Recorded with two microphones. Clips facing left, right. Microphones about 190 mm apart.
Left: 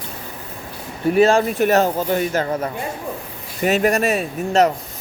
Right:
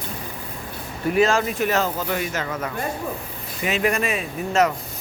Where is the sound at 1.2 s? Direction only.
30° left (ahead or behind).